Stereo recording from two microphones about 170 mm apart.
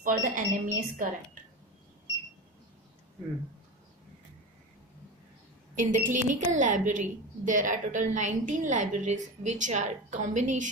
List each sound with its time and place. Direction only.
0.0 s a woman's voice: 55° right (ahead or behind)
5.8 s a woman's voice: 50° right (ahead or behind)